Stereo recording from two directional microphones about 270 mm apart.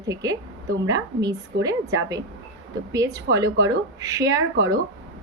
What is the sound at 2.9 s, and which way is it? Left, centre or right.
Speech, centre.